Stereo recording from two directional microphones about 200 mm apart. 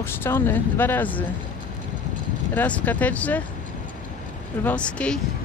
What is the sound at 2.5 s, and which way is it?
Speech, 10° left (ahead or behind).